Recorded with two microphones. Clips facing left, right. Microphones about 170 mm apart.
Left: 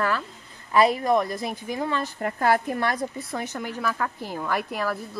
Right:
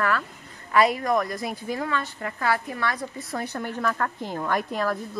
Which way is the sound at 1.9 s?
40° left (ahead or behind).